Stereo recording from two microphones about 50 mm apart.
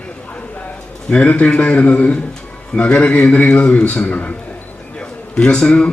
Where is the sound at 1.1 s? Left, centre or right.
Left.